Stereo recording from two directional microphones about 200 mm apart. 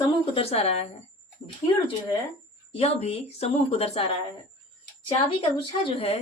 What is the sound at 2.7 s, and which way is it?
A woman's voice, 30° left (ahead or behind).